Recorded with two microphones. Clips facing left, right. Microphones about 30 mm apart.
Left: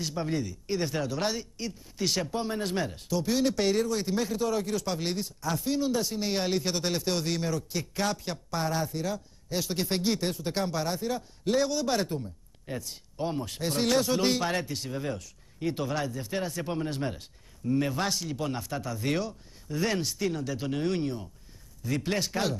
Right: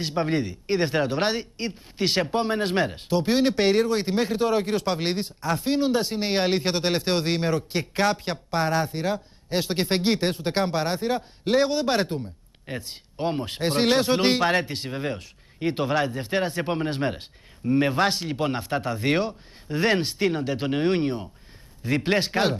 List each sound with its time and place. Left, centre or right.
0.0 s speech: right